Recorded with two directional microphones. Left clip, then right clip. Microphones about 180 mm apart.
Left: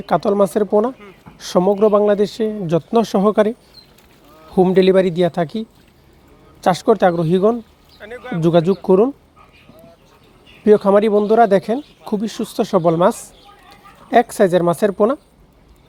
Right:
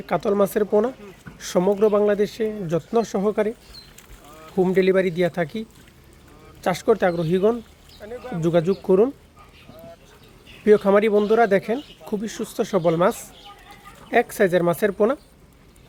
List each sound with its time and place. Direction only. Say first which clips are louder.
0.0 s a man's voice: left 5 dB; 20° left (ahead or behind)
4.5 s a man's voice: left 6 dB; 30° left (ahead or behind)
8.0 s speech: left 4 dB; centre (ahead or behind)
8.4 s a man's voice: left 6 dB; 20° left (ahead or behind)
10.7 s a man's voice: left 4 dB; 15° left (ahead or behind)